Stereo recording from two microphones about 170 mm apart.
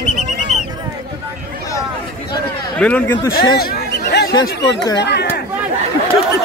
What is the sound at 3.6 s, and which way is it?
Chatter, 65° left (ahead or behind).